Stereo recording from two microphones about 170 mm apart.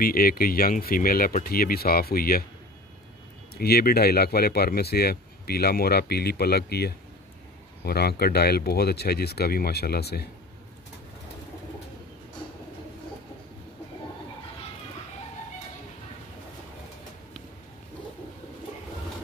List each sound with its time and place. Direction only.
0.0 s speech: 60° left (ahead or behind)
3.5 s speech: 65° left (ahead or behind)